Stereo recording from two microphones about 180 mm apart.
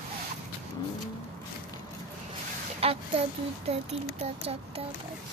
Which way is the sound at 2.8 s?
35° right (ahead or behind).